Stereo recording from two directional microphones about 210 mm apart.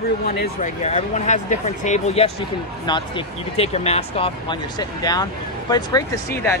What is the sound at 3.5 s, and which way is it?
Speech, 30° left (ahead or behind).